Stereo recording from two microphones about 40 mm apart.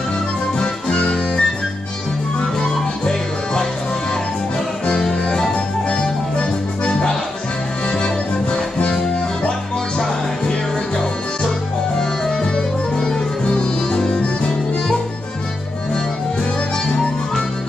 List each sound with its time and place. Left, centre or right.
0.6 s music: left
5.2 s music: left
6.3 s accordion: left
7.9 s music: left
12.0 s music: left